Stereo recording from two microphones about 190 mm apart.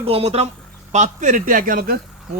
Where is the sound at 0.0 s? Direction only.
30° right (ahead or behind).